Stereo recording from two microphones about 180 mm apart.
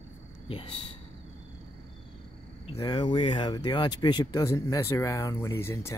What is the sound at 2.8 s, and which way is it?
Speech, 20° left (ahead or behind).